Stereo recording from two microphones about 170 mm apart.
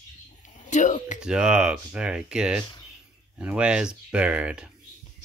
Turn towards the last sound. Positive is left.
turn(degrees=-5)  # may be behind; listen again after turning